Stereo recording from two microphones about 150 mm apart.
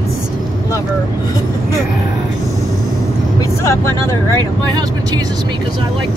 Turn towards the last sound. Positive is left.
turn(degrees=20)  # may be behind; listen again after turning